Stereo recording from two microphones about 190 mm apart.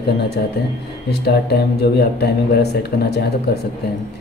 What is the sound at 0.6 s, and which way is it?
Speech, 60° left (ahead or behind).